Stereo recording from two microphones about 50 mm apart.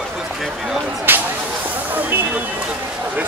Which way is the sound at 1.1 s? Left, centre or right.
Right.